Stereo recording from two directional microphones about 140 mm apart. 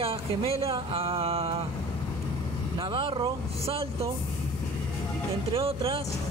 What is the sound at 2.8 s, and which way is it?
Speech, 40° right (ahead or behind).